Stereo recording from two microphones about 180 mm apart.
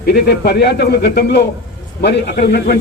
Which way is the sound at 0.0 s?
65° left (ahead or behind).